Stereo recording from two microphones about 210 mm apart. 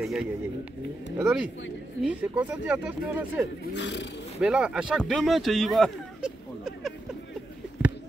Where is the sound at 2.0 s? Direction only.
5° right (ahead or behind).